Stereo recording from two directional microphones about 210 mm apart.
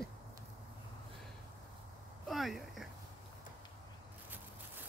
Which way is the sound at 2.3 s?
Centre (ahead or behind).